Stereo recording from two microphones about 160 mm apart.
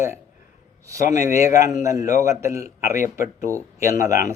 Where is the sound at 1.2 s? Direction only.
20° right (ahead or behind).